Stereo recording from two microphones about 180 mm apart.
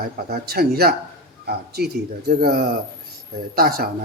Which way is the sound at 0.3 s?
60° right (ahead or behind).